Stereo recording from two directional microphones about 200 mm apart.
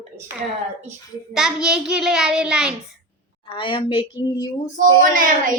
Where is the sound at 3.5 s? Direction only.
25° left (ahead or behind).